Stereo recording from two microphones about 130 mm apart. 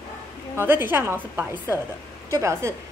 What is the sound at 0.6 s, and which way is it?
A woman's voice, 15° right (ahead or behind).